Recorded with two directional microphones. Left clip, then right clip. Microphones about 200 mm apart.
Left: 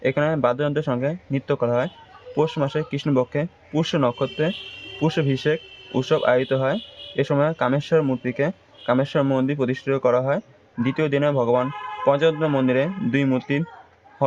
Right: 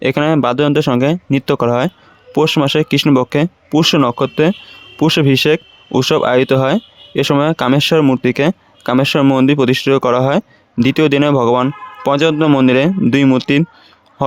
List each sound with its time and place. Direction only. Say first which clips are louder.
0.0 s speech: right 7 dB; 45° right (ahead or behind)